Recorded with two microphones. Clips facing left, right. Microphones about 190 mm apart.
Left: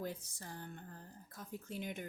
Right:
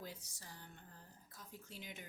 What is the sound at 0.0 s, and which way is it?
Speech, 55° left (ahead or behind).